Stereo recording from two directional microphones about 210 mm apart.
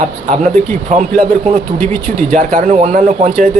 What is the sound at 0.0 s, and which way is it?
A man's voice, 35° right (ahead or behind).